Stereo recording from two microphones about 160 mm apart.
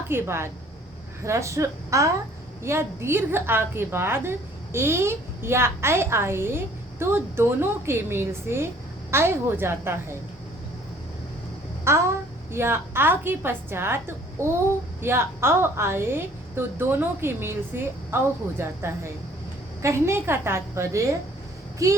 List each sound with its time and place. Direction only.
0.1 s a woman's voice: 15° right (ahead or behind)
11.9 s a woman's voice: 15° right (ahead or behind)